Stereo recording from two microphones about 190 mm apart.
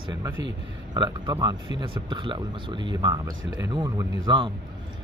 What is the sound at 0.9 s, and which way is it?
Speech, 20° right (ahead or behind).